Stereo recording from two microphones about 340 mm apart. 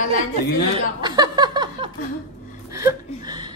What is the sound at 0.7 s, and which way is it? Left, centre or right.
Chuckle, centre.